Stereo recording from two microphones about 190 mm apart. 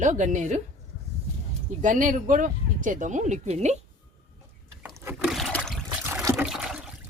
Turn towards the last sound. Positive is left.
turn(degrees=-5)  # may be behind; listen again after turning